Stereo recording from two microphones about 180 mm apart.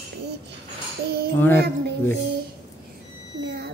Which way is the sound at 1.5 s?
65° right (ahead or behind).